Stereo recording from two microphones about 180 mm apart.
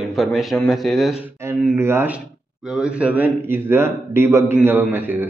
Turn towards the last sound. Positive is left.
turn(degrees=-10)  # may be behind; listen again after turning